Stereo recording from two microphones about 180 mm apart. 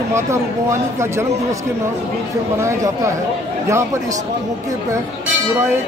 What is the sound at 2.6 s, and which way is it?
A man's voice, 15° right (ahead or behind).